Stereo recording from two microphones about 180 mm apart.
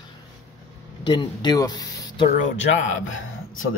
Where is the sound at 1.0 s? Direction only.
25° left (ahead or behind).